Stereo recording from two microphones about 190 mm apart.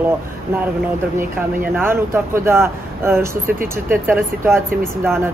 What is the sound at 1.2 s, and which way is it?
Speech, 10° right (ahead or behind).